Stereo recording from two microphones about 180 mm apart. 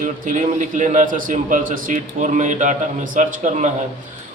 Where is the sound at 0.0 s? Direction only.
45° right (ahead or behind).